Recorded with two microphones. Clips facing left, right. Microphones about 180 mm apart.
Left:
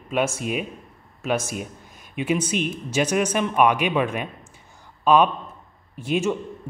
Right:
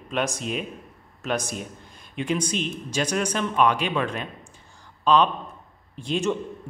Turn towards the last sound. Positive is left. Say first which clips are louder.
# left 2 dB
turn(degrees=10)  # may be behind; listen again after turning